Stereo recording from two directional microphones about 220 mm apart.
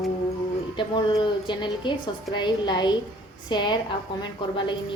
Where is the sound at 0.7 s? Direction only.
20° left (ahead or behind).